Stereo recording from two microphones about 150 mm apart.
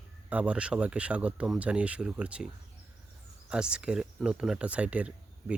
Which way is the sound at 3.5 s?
5° right (ahead or behind).